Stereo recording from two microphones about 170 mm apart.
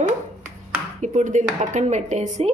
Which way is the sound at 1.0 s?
45° right (ahead or behind).